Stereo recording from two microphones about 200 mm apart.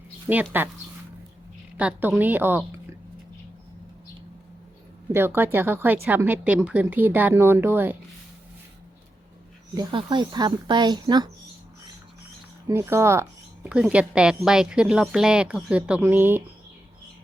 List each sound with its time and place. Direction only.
0.5 s speech: 10° right (ahead or behind)
1.7 s speech: 10° right (ahead or behind)
5.1 s speech: 10° right (ahead or behind)
9.7 s speech: 25° right (ahead or behind)
12.6 s speech: 15° right (ahead or behind)